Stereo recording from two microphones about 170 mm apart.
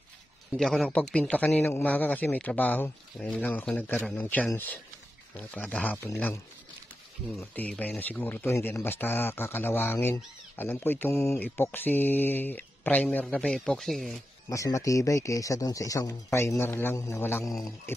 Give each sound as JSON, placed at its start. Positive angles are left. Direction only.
{"t": 0.6, "sound": "speech", "side_deg": 5}
{"t": 7.3, "sound": "speech", "side_deg": 10}
{"t": 14.5, "sound": "speech", "side_deg": 20}